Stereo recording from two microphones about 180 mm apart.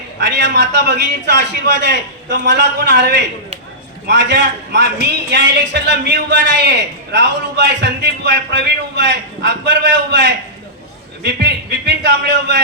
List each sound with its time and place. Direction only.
0.2 s a man's voice: 75° right (ahead or behind)